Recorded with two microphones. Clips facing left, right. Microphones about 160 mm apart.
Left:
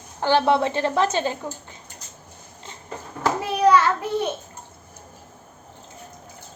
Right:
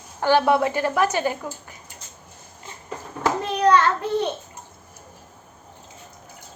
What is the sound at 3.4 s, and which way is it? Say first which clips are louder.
Hands: left 1 dB; 10° left (ahead or behind).